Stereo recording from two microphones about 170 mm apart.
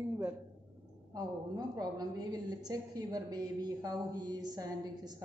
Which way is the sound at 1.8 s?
25° right (ahead or behind).